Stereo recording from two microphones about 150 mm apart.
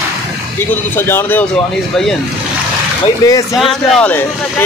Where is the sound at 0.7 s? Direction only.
15° left (ahead or behind).